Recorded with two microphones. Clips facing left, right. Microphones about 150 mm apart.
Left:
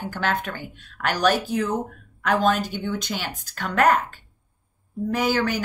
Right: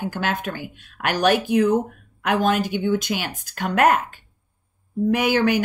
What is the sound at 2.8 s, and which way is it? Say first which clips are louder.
Speech: right 7 dB; 50° right (ahead or behind).